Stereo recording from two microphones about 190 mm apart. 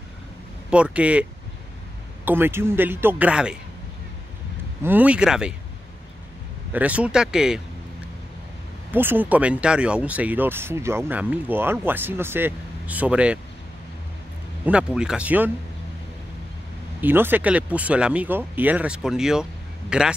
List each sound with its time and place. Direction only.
0.7 s speech: 5° right (ahead or behind)
2.2 s speech: 10° right (ahead or behind)
4.8 s speech: 10° right (ahead or behind)
6.7 s speech: 5° right (ahead or behind)
8.9 s speech: 10° right (ahead or behind)
14.7 s speech: 5° right (ahead or behind)
17.0 s speech: 10° right (ahead or behind)